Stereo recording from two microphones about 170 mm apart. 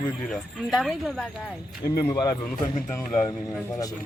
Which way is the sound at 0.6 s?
Centre (ahead or behind).